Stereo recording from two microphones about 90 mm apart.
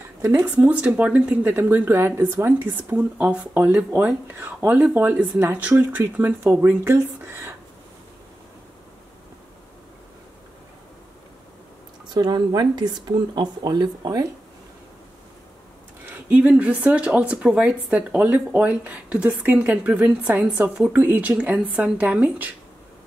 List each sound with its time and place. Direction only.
0.4 s speech: 15° right (ahead or behind)
6.4 s speech: 30° right (ahead or behind)
12.1 s speech: 50° right (ahead or behind)
16.1 s speech: 15° right (ahead or behind)